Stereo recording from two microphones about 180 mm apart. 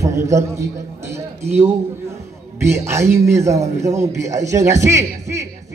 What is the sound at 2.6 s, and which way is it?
A man's voice, 15° right (ahead or behind).